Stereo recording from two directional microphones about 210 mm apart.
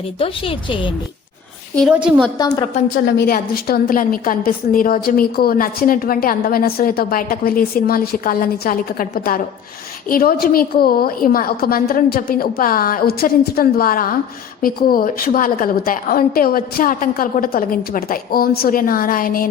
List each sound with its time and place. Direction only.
0.2 s a woman's voice: 25° left (ahead or behind)
1.7 s a woman's voice: centre (ahead or behind)
3.1 s a woman's voice: 50° left (ahead or behind)